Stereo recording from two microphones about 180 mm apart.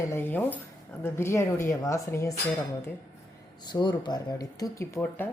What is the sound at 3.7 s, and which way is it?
Speech, 25° left (ahead or behind).